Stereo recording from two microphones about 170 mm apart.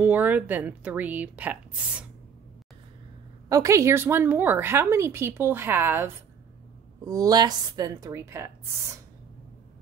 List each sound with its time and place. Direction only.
0.0 s a woman's voice: 10° right (ahead or behind)
3.4 s a woman's voice: 20° right (ahead or behind)